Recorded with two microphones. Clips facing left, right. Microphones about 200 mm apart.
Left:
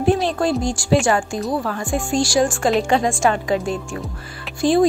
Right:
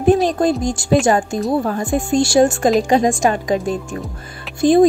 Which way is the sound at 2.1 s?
25° right (ahead or behind).